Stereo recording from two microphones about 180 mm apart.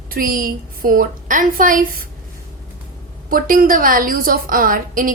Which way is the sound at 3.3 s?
50° right (ahead or behind).